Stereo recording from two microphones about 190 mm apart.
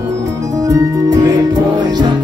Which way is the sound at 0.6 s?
15° right (ahead or behind).